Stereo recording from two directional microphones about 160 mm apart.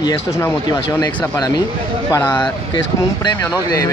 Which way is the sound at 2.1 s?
10° left (ahead or behind).